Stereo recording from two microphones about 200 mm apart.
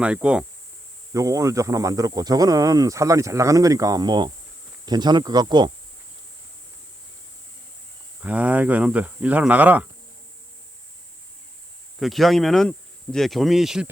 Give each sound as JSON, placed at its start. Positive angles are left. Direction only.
{"t": 0.0, "sound": "speech", "side_deg": -5}
{"t": 1.1, "sound": "speech", "side_deg": -15}
{"t": 8.2, "sound": "speech", "side_deg": -5}
{"t": 11.9, "sound": "speech", "side_deg": 0}